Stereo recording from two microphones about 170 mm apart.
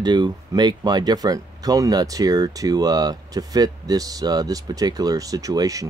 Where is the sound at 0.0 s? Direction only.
25° right (ahead or behind).